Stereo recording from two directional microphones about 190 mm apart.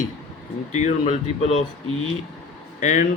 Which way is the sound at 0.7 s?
35° left (ahead or behind).